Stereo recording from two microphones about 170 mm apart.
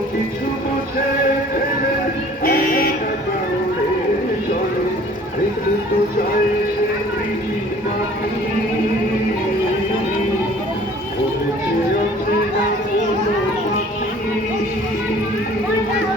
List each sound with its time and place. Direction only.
2.4 s music: 60° left (ahead or behind)